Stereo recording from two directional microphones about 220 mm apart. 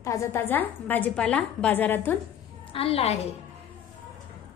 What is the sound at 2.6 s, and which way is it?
Speech, 25° left (ahead or behind).